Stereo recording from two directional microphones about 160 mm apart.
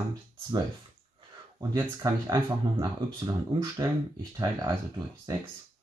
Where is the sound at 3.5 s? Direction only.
35° right (ahead or behind).